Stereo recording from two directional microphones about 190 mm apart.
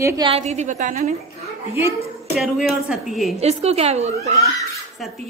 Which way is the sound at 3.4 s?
35° right (ahead or behind).